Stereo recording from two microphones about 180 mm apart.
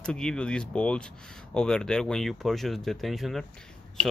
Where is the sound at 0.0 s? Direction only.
5° left (ahead or behind).